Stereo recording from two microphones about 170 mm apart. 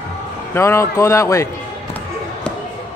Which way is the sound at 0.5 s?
15° left (ahead or behind).